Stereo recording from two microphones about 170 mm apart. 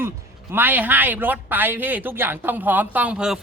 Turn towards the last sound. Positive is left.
turn(degrees=-5)  # may be behind; listen again after turning